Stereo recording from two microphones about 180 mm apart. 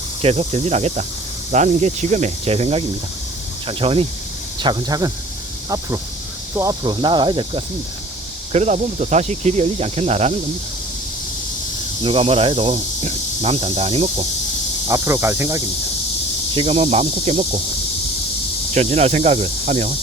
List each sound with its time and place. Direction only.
0.2 s speech: 35° right (ahead or behind)
4.6 s cricket: 20° right (ahead or behind)
8.5 s speech: 40° right (ahead or behind)
12.0 s speech: 30° right (ahead or behind)
14.8 s speech: 15° right (ahead or behind)
16.6 s speech: 35° right (ahead or behind)
18.7 s speech: 35° right (ahead or behind)